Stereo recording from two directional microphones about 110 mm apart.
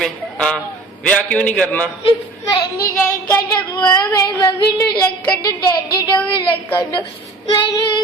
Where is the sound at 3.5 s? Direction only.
40° left (ahead or behind).